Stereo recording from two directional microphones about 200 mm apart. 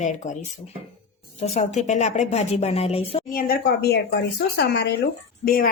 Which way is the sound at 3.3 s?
50° left (ahead or behind).